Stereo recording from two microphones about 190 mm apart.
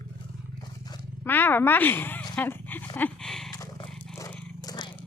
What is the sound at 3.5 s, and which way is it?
Roaring cats, 20° left (ahead or behind).